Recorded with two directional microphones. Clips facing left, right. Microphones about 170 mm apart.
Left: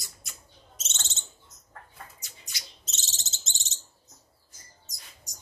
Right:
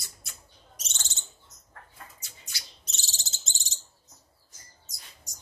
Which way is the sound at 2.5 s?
20° left (ahead or behind).